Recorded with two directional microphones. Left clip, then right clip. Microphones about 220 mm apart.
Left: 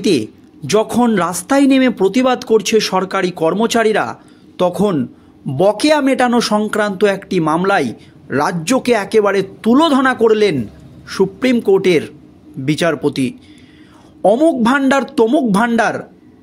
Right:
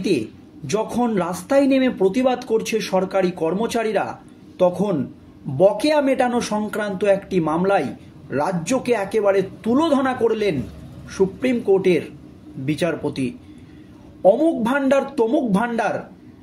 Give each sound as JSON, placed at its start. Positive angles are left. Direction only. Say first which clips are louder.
{"t": 0.7, "sound": "speech", "louder": "left 8 dB", "side_deg": 40}